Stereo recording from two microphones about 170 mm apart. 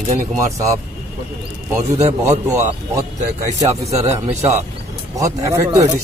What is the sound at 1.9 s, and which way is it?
Speech, 40° right (ahead or behind).